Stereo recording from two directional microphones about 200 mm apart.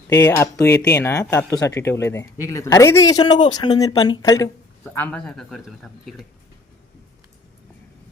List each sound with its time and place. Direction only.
0.1 s speech: 15° left (ahead or behind)
4.9 s a man's voice: 5° left (ahead or behind)